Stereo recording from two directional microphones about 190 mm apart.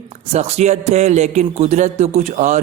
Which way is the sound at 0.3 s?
35° right (ahead or behind).